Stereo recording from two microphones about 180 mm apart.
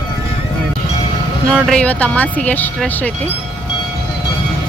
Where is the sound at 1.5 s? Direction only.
Centre (ahead or behind).